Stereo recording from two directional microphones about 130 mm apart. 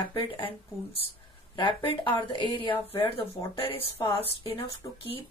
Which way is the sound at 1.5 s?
40° left (ahead or behind).